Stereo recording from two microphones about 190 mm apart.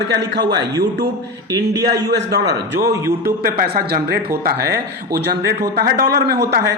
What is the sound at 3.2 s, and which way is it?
Speech, 50° right (ahead or behind).